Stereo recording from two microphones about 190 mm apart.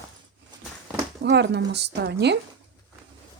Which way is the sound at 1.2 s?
60° right (ahead or behind).